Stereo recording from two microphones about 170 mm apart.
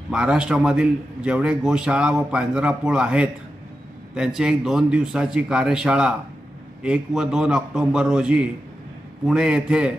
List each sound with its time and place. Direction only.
0.1 s a man's voice: 5° right (ahead or behind)